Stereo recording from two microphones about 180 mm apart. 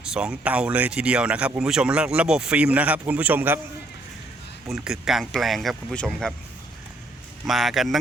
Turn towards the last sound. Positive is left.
turn(degrees=0)  # may be behind; listen again after turning